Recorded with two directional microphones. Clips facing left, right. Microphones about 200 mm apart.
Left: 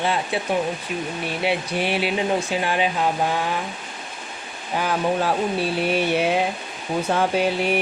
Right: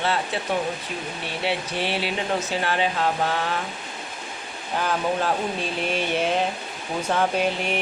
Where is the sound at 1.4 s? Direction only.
15° left (ahead or behind).